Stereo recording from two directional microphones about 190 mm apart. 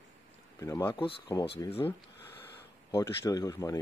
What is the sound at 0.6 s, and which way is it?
Speech, 15° left (ahead or behind).